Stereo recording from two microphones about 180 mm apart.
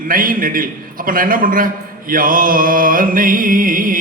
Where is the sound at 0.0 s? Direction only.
50° right (ahead or behind).